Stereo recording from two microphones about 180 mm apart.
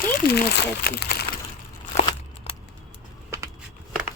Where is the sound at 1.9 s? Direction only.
35° left (ahead or behind).